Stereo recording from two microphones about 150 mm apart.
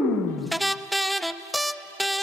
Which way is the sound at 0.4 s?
Centre (ahead or behind).